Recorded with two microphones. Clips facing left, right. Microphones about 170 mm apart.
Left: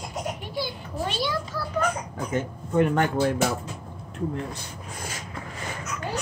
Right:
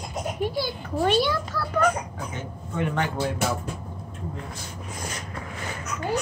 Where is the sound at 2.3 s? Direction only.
45° left (ahead or behind).